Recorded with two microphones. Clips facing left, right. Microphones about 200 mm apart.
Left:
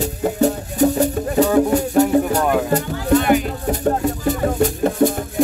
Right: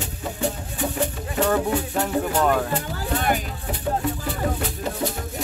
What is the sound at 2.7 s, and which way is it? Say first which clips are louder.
Music: left 9 dB; 45° left (ahead or behind).